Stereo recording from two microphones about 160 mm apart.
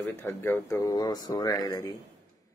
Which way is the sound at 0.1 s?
15° left (ahead or behind).